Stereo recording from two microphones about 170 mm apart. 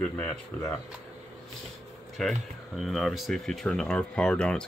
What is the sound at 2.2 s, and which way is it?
Speech, centre (ahead or behind).